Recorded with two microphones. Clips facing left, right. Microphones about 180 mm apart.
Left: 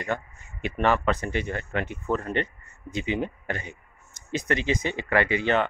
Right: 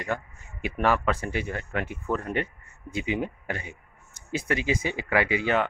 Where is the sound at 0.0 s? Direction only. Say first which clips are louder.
Left 1 dB; 10° right (ahead or behind).